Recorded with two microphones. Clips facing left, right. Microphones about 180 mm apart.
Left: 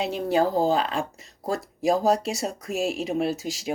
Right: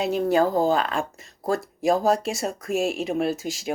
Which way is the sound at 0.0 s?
45° right (ahead or behind).